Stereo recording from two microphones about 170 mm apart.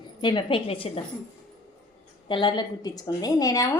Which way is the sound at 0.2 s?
25° left (ahead or behind).